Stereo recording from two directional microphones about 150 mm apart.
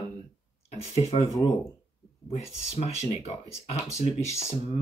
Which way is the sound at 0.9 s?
45° left (ahead or behind).